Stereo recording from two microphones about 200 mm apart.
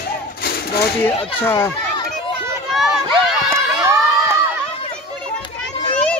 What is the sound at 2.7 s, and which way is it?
Run, centre (ahead or behind).